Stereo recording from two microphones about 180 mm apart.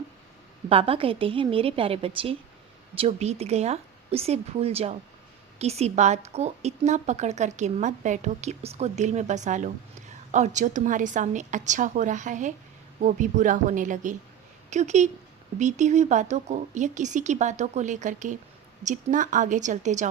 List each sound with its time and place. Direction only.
0.7 s a woman's voice: 30° right (ahead or behind)